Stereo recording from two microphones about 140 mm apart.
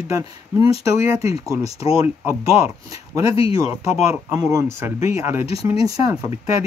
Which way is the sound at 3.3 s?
45° left (ahead or behind).